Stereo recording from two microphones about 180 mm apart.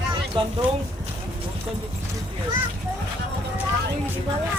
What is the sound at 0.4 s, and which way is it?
Speech, 30° right (ahead or behind).